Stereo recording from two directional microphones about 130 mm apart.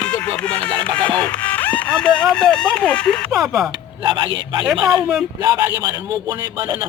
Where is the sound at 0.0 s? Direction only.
10° left (ahead or behind).